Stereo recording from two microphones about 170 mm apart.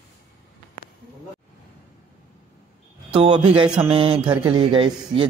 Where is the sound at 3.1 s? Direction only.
30° right (ahead or behind).